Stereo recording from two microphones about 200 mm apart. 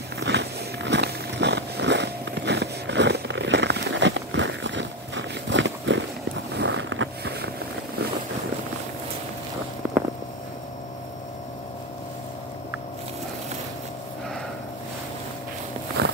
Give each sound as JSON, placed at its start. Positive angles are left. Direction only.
{"t": 0.2, "sound": "a sound", "side_deg": -60}
{"t": 6.5, "sound": "vehicle", "side_deg": -60}
{"t": 16.0, "sound": "walk", "side_deg": -55}